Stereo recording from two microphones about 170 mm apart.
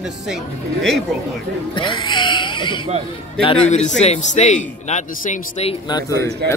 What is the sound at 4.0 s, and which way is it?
A man's voice, 40° left (ahead or behind).